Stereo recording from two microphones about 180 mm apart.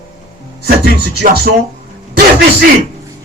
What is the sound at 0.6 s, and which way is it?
Speech, 60° right (ahead or behind).